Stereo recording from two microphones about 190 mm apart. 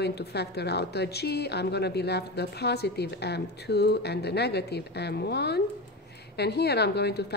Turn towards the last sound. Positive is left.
turn(degrees=60)  # may be behind; listen again after turning